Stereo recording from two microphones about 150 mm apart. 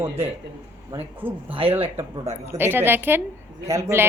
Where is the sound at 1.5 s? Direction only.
35° right (ahead or behind).